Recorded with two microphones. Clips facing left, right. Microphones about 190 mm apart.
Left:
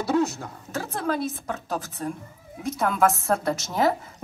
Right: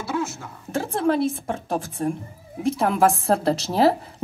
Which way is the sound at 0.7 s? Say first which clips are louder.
Right 6 dB; 30° right (ahead or behind).